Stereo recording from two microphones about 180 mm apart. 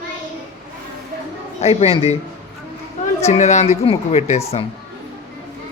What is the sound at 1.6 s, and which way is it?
Speech, 35° left (ahead or behind).